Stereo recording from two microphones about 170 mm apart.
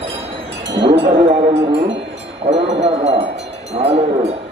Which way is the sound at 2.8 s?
40° right (ahead or behind).